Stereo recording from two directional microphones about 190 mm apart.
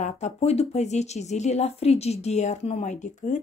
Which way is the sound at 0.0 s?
35° left (ahead or behind).